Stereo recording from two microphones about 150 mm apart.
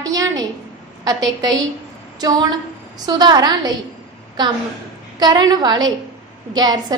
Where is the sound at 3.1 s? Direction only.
30° right (ahead or behind).